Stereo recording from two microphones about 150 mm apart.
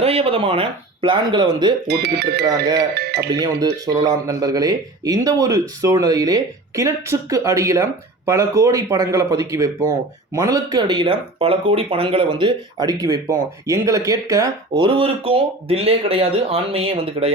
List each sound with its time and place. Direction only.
0.0 s speech: 40° right (ahead or behind)
1.9 s speech: 90° right
4.0 s speech: 25° right (ahead or behind)
14.8 s speech: 35° right (ahead or behind)